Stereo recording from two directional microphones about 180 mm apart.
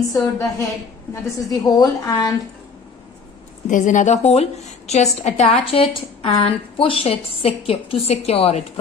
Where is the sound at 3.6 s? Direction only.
45° left (ahead or behind).